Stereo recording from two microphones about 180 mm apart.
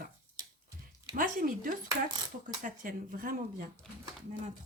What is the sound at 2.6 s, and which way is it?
Speech, 50° right (ahead or behind).